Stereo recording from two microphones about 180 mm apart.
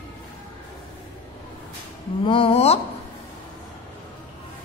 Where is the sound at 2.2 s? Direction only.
30° left (ahead or behind).